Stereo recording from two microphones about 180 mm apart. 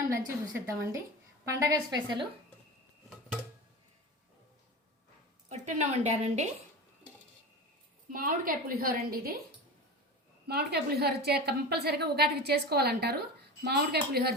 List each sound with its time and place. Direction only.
0.1 s a woman's voice: 15° right (ahead or behind)
5.5 s a woman's voice: 40° right (ahead or behind)
8.1 s a woman's voice: 50° right (ahead or behind)
10.4 s a woman's voice: 65° right (ahead or behind)